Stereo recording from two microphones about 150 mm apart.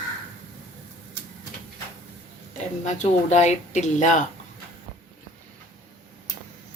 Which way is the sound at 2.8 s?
50° left (ahead or behind).